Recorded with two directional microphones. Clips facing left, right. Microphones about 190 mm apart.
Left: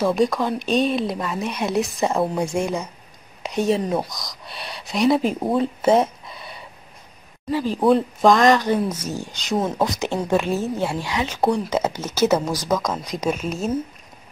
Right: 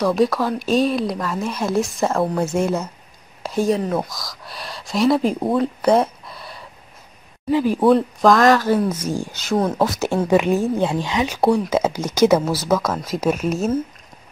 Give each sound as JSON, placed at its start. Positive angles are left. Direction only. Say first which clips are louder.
{"t": 0.0, "sound": "speech", "louder": "right 1 dB", "side_deg": 0}
{"t": 2.5, "sound": "speech", "louder": "right 3 dB", "side_deg": 10}
{"t": 3.4, "sound": "speech", "louder": "right 1 dB", "side_deg": 20}
{"t": 4.6, "sound": "speech", "louder": "right 1 dB", "side_deg": 0}
{"t": 5.6, "sound": "speech", "louder": "even", "side_deg": 25}
{"t": 5.9, "sound": "a sound", "louder": "right 1 dB", "side_deg": 0}
{"t": 7.5, "sound": "speech", "louder": "right 5 dB", "side_deg": -10}
{"t": 7.8, "sound": "speech", "louder": "even", "side_deg": 0}
{"t": 9.5, "sound": "speech", "louder": "right 3 dB", "side_deg": 0}
{"t": 10.3, "sound": "speech", "louder": "right 5 dB", "side_deg": -15}